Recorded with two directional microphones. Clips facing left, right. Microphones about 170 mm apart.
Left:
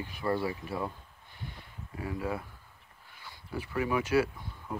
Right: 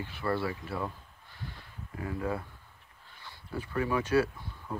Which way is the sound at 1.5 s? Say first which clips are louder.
Even; 20° left (ahead or behind).